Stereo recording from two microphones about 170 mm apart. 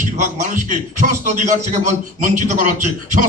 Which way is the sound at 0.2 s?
45° right (ahead or behind).